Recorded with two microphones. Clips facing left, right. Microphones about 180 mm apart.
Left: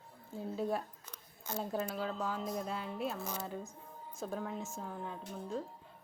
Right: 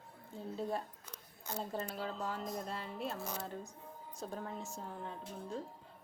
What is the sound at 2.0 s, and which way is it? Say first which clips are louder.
Speech: left 3 dB; centre (ahead or behind).